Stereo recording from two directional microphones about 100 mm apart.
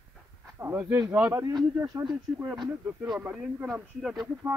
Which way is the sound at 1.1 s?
20° right (ahead or behind).